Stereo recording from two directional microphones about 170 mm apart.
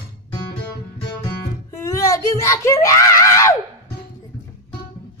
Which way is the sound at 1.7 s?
20° left (ahead or behind).